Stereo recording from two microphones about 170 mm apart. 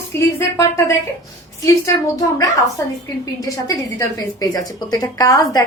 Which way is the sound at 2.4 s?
20° left (ahead or behind).